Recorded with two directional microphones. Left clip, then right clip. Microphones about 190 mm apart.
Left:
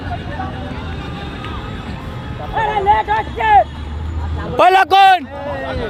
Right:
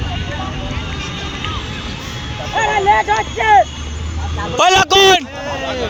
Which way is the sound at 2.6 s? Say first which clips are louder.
Right 1 dB; 45° right (ahead or behind).